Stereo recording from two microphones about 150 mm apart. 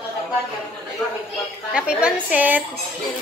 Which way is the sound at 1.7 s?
5° right (ahead or behind).